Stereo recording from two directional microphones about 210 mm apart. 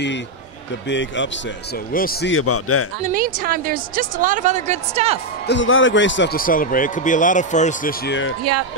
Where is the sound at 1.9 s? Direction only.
45° left (ahead or behind).